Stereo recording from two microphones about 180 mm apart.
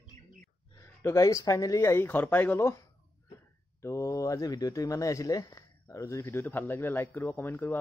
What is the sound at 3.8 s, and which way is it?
Speech, 15° left (ahead or behind).